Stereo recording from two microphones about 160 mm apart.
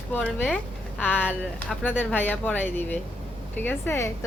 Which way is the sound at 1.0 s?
5° right (ahead or behind).